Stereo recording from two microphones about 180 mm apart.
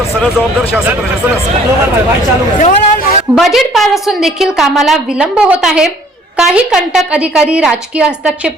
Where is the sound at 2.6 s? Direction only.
45° left (ahead or behind).